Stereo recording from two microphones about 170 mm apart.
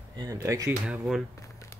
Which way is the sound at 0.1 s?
20° right (ahead or behind).